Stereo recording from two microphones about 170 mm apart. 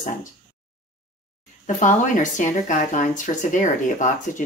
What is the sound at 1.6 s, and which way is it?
Speech, 50° left (ahead or behind).